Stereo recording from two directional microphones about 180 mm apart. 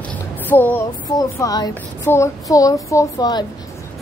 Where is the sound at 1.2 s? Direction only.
20° left (ahead or behind).